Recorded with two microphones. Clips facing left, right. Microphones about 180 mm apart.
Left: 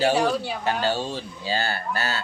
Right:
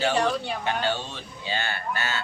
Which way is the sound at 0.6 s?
35° left (ahead or behind).